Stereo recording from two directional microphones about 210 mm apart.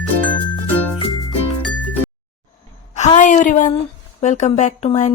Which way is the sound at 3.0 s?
35° left (ahead or behind).